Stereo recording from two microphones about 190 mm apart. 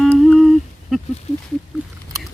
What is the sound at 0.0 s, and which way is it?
Humming, centre (ahead or behind).